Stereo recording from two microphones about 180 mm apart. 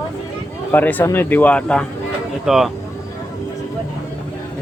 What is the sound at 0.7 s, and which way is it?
Speech, 10° left (ahead or behind).